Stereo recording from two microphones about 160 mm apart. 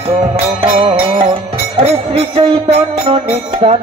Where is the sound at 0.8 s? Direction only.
30° right (ahead or behind).